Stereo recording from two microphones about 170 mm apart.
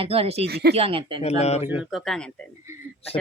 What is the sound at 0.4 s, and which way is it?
Speech, 75° right (ahead or behind).